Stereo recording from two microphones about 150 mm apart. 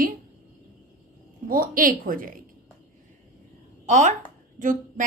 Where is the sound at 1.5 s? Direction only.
70° right (ahead or behind).